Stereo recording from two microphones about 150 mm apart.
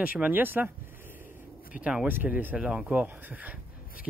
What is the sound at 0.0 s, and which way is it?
Speech, 10° right (ahead or behind).